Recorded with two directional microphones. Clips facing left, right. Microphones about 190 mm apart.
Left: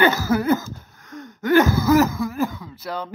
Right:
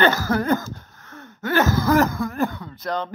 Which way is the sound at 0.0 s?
10° left (ahead or behind).